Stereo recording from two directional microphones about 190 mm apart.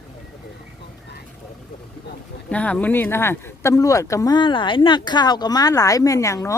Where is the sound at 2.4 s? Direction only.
5° left (ahead or behind).